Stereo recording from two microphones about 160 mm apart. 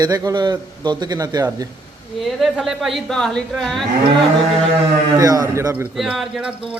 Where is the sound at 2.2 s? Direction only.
Centre (ahead or behind).